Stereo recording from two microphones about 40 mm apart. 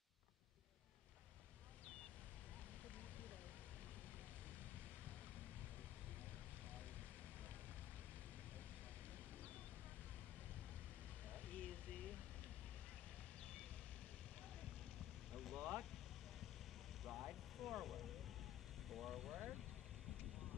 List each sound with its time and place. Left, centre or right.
11.3 s a sound: left
15.3 s vehicle: centre
17.0 s vehicle: centre